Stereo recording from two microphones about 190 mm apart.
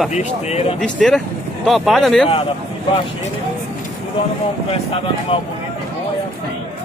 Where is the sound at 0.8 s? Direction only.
5° left (ahead or behind).